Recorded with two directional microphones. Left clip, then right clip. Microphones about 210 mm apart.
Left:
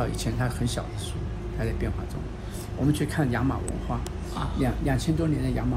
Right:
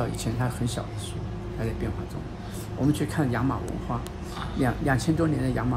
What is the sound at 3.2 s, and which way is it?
Speech, 10° right (ahead or behind).